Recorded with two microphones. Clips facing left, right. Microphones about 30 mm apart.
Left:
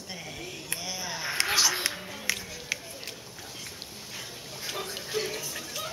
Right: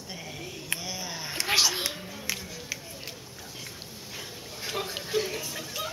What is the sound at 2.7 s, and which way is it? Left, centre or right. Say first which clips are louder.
Run: left 5 dB; left.